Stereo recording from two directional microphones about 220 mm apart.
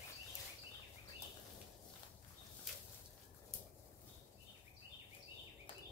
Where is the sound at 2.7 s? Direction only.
Centre (ahead or behind).